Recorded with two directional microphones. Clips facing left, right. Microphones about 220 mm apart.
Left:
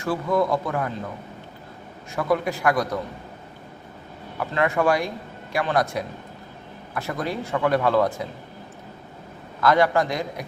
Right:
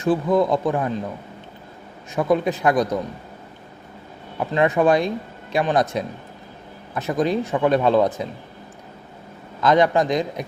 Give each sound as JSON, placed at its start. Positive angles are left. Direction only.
{"t": 0.0, "sound": "speech", "side_deg": -20}
{"t": 2.1, "sound": "speech", "side_deg": -20}
{"t": 4.4, "sound": "speech", "side_deg": -20}
{"t": 9.6, "sound": "speech", "side_deg": -20}